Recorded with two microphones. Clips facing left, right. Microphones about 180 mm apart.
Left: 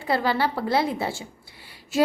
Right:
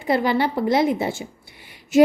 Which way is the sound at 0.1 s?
20° right (ahead or behind).